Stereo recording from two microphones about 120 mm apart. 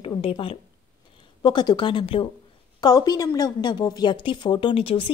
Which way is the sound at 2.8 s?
35° left (ahead or behind).